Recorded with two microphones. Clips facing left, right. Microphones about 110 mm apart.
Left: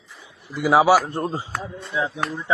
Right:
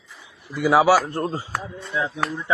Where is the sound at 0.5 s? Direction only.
20° left (ahead or behind).